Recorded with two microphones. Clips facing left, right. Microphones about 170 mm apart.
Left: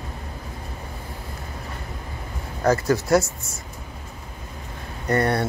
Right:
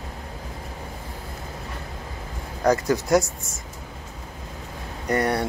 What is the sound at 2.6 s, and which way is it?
Speech, 15° right (ahead or behind).